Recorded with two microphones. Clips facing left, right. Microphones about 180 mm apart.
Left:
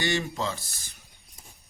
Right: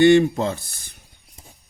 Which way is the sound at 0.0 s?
55° right (ahead or behind).